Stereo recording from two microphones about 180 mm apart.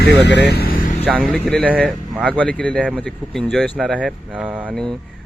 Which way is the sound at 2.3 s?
5° left (ahead or behind).